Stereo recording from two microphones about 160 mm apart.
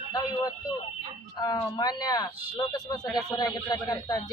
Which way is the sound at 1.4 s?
25° left (ahead or behind).